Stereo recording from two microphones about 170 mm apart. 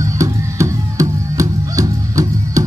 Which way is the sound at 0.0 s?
20° right (ahead or behind).